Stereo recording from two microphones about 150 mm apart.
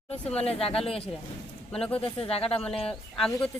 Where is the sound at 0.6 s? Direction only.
40° left (ahead or behind).